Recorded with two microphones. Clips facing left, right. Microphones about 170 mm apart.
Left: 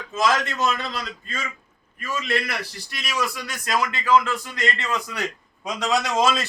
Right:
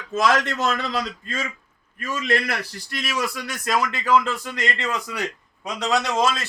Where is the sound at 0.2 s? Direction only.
70° right (ahead or behind); by 1.0 s 90° right.